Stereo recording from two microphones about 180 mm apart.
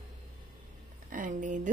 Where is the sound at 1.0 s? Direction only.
45° right (ahead or behind).